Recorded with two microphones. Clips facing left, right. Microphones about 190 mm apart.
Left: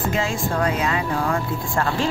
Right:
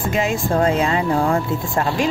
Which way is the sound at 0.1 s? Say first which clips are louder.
Right 4 dB; 20° right (ahead or behind).